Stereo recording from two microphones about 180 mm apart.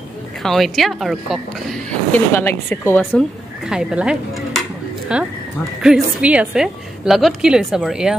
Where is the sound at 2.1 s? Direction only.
15° left (ahead or behind).